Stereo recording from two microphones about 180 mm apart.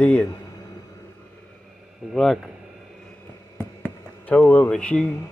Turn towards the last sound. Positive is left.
turn(degrees=5)  # may be behind; listen again after turning